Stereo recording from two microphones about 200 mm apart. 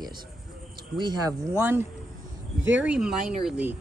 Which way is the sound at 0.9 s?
20° right (ahead or behind).